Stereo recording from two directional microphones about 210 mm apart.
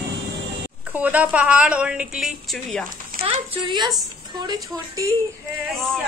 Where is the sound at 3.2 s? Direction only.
20° right (ahead or behind).